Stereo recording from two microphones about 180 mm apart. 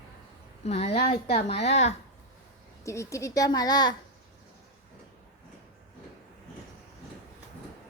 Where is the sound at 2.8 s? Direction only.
15° left (ahead or behind).